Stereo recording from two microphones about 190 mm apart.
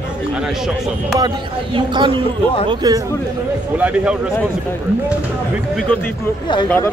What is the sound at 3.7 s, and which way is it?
Speech, 10° right (ahead or behind).